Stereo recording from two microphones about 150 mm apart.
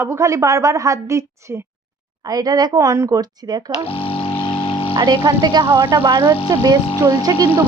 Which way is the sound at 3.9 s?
40° left (ahead or behind).